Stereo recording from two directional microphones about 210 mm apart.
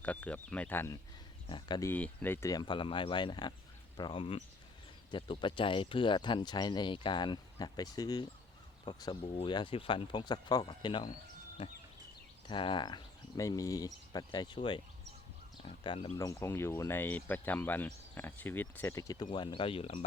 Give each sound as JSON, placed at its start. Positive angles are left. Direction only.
{"t": 0.0, "sound": "speech", "side_deg": 5}
{"t": 1.5, "sound": "speech", "side_deg": 20}
{"t": 1.9, "sound": "speech", "side_deg": 10}
{"t": 16.1, "sound": "speech", "side_deg": 15}